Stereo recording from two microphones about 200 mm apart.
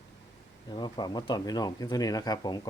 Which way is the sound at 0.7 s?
20° left (ahead or behind).